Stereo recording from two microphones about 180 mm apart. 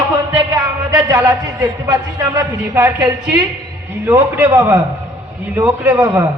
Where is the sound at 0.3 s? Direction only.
20° right (ahead or behind).